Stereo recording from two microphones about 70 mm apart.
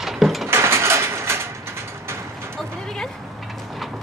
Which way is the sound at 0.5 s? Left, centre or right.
Right.